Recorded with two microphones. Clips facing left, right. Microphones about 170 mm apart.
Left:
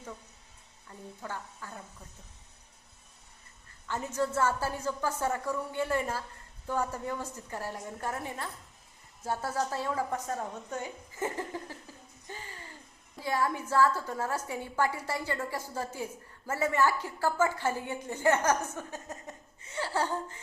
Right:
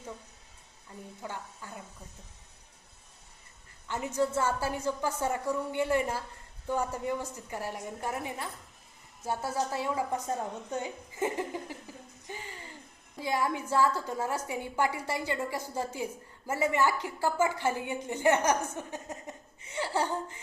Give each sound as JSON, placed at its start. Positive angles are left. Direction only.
{"t": 1.2, "sound": "a woman's voice", "side_deg": -15}
{"t": 3.8, "sound": "a woman's voice", "side_deg": -10}
{"t": 12.3, "sound": "music", "side_deg": -15}
{"t": 13.1, "sound": "a woman's voice", "side_deg": -15}